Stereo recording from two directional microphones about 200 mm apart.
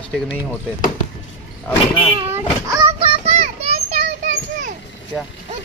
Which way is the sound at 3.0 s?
30° right (ahead or behind).